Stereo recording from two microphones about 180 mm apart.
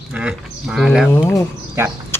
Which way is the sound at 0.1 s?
5° right (ahead or behind).